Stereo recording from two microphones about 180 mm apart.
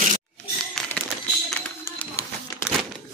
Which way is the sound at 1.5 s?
10° left (ahead or behind).